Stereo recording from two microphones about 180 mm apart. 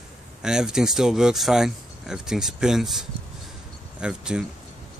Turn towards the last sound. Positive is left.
turn(degrees=-5)  # may be behind; listen again after turning